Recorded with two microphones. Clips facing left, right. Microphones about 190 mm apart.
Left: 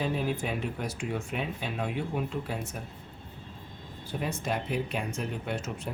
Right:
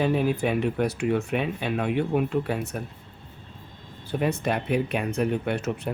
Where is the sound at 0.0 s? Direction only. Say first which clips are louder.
Right 7 dB; 65° right (ahead or behind).